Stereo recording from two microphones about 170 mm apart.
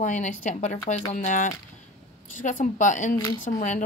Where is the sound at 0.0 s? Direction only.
45° left (ahead or behind).